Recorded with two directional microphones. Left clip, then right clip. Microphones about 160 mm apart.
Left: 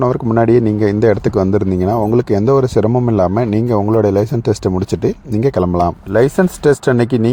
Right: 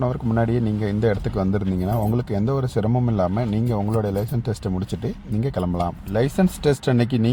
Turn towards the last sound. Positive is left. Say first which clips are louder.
# left 8 dB
turn(degrees=40)  # may be behind; listen again after turning